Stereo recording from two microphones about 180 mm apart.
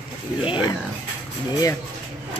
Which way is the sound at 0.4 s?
25° left (ahead or behind).